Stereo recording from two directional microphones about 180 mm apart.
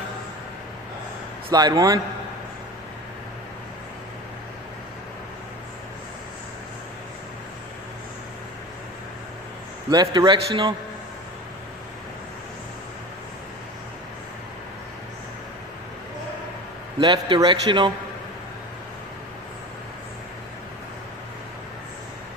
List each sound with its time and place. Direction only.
1.5 s a man's voice: 20° right (ahead or behind)
9.8 s a man's voice: 25° right (ahead or behind)
17.0 s a man's voice: 20° right (ahead or behind)